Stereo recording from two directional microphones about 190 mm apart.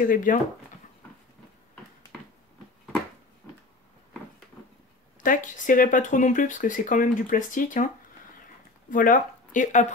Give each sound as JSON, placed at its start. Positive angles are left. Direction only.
{"t": 0.0, "sound": "speech", "side_deg": 45}
{"t": 5.2, "sound": "speech", "side_deg": 45}
{"t": 8.9, "sound": "speech", "side_deg": 45}